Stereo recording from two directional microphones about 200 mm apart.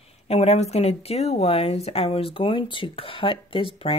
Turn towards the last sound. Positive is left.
turn(degrees=25)  # may be behind; listen again after turning